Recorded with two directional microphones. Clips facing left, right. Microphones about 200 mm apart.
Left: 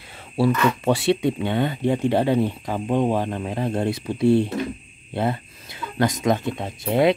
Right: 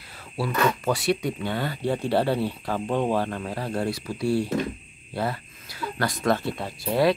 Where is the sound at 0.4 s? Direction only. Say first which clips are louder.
Left 5 dB; 30° left (ahead or behind).